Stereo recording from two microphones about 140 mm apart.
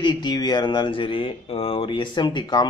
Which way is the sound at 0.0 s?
30° left (ahead or behind).